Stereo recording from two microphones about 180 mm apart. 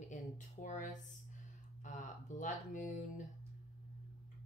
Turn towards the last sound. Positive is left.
turn(degrees=45)  # may be behind; listen again after turning